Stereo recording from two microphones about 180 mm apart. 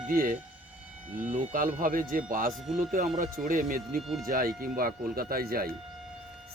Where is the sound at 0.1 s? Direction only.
50° right (ahead or behind).